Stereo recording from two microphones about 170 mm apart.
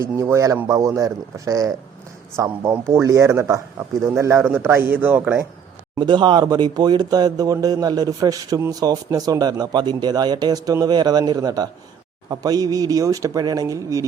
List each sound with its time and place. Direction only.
0.0 s a man's voice: 15° right (ahead or behind)
6.0 s speech: 25° right (ahead or behind)